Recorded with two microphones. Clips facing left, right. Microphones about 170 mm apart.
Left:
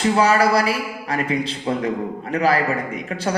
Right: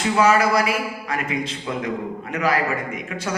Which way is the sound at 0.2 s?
35° left (ahead or behind).